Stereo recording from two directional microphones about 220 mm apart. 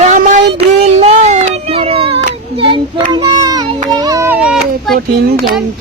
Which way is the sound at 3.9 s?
15° right (ahead or behind).